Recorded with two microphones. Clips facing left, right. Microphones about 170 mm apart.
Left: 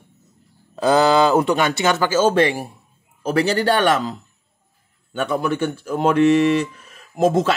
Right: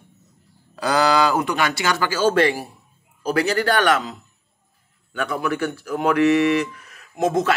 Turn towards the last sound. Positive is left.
turn(degrees=30)  # may be behind; listen again after turning